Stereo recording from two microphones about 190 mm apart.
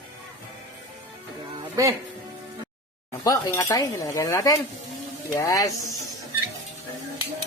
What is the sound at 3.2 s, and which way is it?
Dishes, 15° left (ahead or behind).